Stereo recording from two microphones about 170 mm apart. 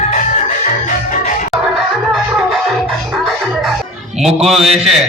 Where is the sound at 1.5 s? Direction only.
Centre (ahead or behind).